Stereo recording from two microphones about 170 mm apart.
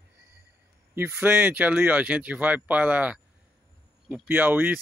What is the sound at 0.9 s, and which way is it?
Speech, 10° right (ahead or behind).